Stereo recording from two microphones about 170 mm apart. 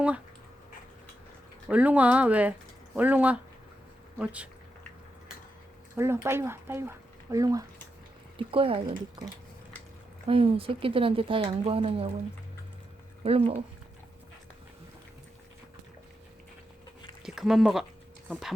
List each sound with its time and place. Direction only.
1.7 s speech: 10° right (ahead or behind)
6.2 s speech: 15° right (ahead or behind)
8.4 s speech: 30° right (ahead or behind)
13.2 s speech: 35° right (ahead or behind)
17.2 s speech: centre (ahead or behind)